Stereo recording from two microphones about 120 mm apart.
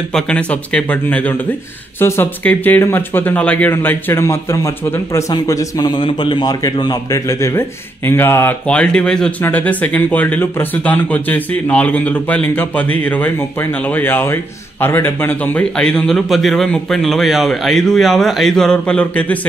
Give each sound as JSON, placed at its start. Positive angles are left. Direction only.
{"t": 0.1, "sound": "speech", "side_deg": 10}
{"t": 6.0, "sound": "speech", "side_deg": 40}